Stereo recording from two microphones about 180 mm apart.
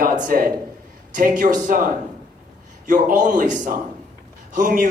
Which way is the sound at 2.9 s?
45° right (ahead or behind).